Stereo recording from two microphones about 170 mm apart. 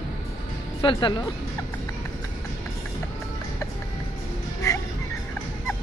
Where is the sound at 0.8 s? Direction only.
30° left (ahead or behind).